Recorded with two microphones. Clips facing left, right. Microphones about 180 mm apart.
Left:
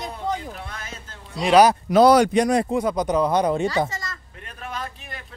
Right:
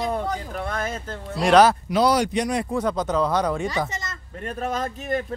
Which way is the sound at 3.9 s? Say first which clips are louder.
Even; 20° right (ahead or behind).